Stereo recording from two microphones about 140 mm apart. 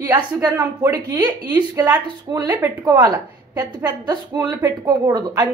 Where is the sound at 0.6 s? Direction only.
25° right (ahead or behind).